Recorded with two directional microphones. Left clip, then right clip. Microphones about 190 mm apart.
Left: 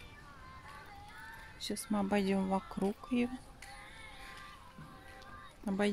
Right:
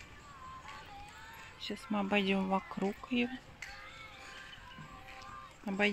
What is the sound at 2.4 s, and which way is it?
Speech, centre (ahead or behind).